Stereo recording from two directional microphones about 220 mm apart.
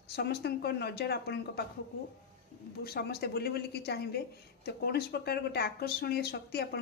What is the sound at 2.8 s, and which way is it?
A woman's voice, 45° left (ahead or behind).